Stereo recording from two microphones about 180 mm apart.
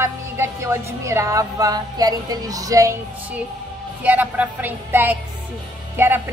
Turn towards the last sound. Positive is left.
turn(degrees=-10)  # may be behind; listen again after turning